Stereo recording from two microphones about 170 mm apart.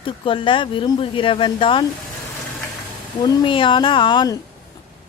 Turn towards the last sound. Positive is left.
turn(degrees=25)  # may be behind; listen again after turning